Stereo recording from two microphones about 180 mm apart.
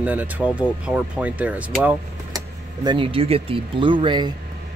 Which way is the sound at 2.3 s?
25° right (ahead or behind).